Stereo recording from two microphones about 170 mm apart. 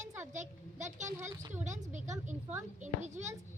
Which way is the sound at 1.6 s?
45° right (ahead or behind).